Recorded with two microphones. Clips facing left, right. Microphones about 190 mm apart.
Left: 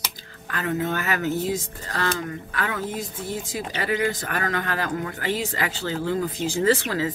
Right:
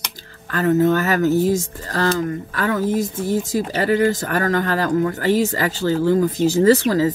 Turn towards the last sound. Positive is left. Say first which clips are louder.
# right 7 dB
turn(degrees=-40)  # may be behind; listen again after turning